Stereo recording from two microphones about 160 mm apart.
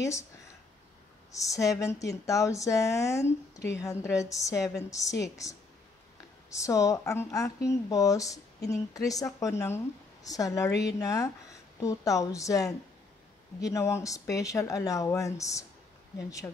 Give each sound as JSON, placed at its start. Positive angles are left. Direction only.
{"t": 0.0, "sound": "speech", "side_deg": 20}
{"t": 1.3, "sound": "speech", "side_deg": 20}